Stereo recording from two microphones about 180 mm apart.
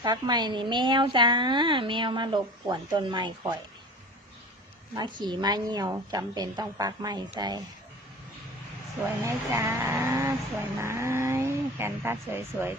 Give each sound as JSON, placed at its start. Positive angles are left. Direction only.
{"t": 0.0, "sound": "a woman's voice", "side_deg": -25}
{"t": 4.9, "sound": "a woman's voice", "side_deg": -25}
{"t": 9.0, "sound": "speech", "side_deg": -15}